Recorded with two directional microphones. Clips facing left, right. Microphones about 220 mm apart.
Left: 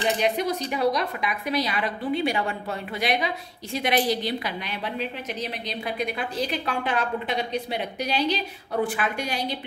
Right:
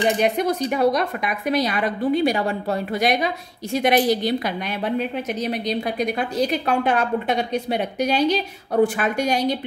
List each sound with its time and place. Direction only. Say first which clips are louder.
0.2 s a woman's voice: right 4 dB; 50° right (ahead or behind)